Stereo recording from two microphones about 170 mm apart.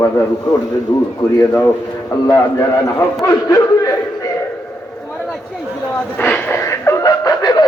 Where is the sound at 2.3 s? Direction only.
20° left (ahead or behind).